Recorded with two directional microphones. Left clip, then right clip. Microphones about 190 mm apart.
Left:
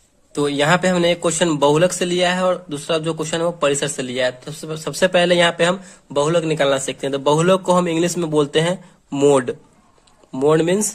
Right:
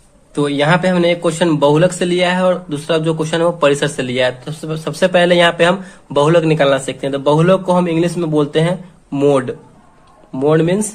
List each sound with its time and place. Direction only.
0.3 s speech: 40° left (ahead or behind)